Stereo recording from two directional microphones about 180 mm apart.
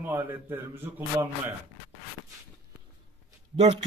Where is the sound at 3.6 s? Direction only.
40° right (ahead or behind).